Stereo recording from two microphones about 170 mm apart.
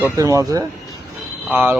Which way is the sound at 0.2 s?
20° right (ahead or behind).